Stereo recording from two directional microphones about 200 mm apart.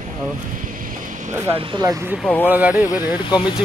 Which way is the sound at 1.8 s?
15° right (ahead or behind).